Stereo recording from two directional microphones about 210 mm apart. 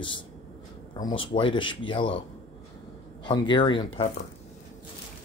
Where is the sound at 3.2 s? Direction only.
20° left (ahead or behind).